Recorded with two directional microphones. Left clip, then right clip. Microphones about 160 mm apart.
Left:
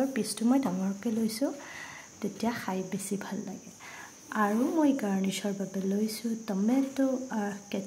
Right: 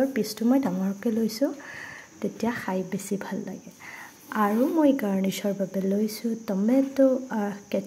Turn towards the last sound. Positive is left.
turn(degrees=-15)  # may be behind; listen again after turning